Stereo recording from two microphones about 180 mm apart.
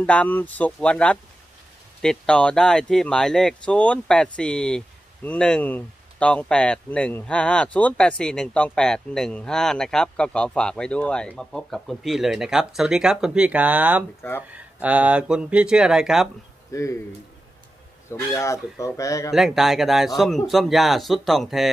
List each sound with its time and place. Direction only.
0.0 s speech: 10° left (ahead or behind)
16.7 s speech: 15° left (ahead or behind)
18.3 s speech: 15° left (ahead or behind)
19.3 s speech: centre (ahead or behind)